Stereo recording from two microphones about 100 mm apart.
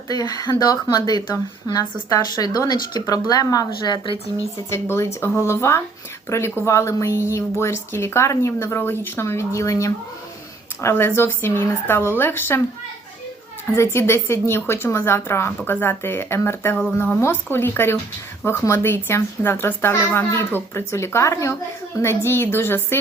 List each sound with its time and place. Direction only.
0.1 s speech: 40° left (ahead or behind)
4.7 s a woman's voice: 25° left (ahead or behind)
13.7 s a woman's voice: 25° left (ahead or behind)